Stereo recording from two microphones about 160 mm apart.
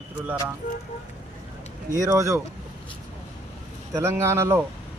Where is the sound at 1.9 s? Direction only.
20° right (ahead or behind).